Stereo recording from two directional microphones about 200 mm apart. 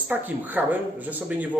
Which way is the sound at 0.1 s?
10° right (ahead or behind).